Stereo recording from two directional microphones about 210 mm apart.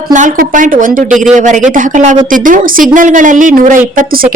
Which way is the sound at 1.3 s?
35° right (ahead or behind).